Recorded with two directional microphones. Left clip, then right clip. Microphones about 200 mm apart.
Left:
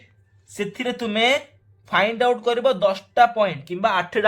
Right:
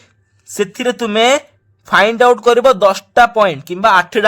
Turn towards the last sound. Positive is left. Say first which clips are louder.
# right 10 dB
turn(degrees=-40)  # may be behind; listen again after turning